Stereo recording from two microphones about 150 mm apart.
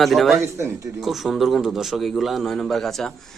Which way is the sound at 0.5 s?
20° right (ahead or behind).